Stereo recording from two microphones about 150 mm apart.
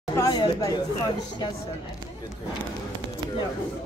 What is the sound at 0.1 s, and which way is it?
Chatter, 25° left (ahead or behind).